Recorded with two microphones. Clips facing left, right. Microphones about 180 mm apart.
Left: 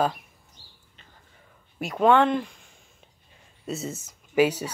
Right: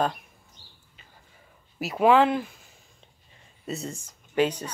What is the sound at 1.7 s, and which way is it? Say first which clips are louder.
Speech: even; 5° right (ahead or behind).